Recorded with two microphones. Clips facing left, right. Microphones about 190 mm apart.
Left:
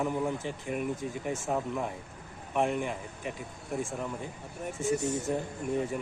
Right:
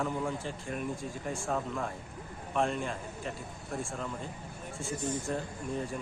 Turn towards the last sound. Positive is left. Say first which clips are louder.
# left 5 dB
turn(degrees=20)  # may be behind; listen again after turning